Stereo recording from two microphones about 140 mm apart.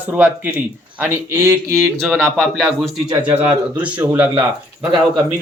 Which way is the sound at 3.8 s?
10° right (ahead or behind).